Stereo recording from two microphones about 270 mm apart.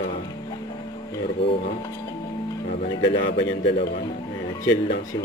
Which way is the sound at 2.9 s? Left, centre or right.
Left.